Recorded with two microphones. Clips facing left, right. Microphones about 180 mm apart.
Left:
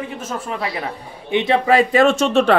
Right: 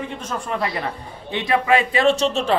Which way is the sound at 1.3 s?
25° left (ahead or behind).